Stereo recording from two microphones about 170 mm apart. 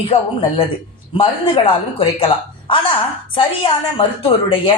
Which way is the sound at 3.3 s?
30° left (ahead or behind).